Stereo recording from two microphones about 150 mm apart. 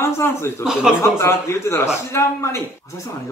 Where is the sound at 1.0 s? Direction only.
20° left (ahead or behind).